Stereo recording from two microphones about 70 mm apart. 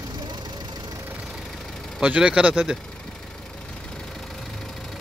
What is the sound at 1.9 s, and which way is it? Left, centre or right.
Speech, centre.